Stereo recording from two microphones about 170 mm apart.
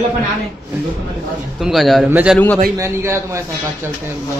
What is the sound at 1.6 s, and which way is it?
A man's voice, centre (ahead or behind).